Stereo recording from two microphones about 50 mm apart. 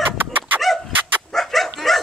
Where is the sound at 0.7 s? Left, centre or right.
Centre.